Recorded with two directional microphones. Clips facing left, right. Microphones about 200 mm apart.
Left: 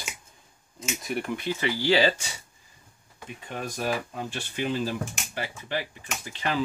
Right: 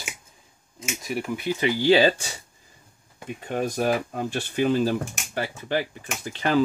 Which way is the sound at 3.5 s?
50° right (ahead or behind).